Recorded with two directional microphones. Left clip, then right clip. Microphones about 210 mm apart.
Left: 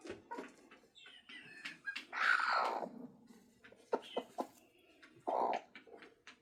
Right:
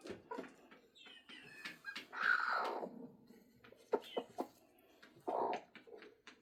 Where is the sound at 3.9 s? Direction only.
40° left (ahead or behind).